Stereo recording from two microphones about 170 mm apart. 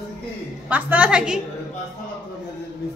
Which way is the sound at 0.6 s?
10° right (ahead or behind).